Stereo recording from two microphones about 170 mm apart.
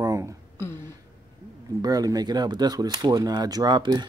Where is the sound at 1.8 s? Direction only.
20° right (ahead or behind).